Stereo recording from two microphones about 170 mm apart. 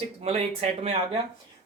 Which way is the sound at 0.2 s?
40° right (ahead or behind).